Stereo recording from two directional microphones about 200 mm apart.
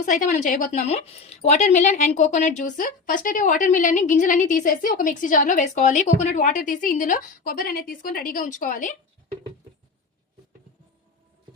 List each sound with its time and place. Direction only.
0.0 s speech: 40° left (ahead or behind)